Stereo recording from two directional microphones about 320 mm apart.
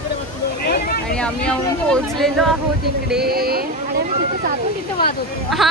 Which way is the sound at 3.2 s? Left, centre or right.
Right.